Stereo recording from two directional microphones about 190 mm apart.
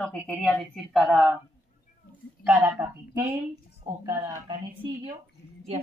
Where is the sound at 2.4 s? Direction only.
10° right (ahead or behind).